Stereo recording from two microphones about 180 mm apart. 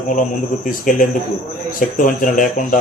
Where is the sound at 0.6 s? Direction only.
45° left (ahead or behind).